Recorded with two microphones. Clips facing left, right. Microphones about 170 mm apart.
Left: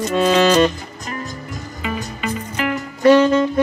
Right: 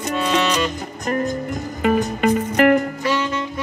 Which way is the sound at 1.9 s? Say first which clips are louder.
Right 8 dB; 60° right (ahead or behind).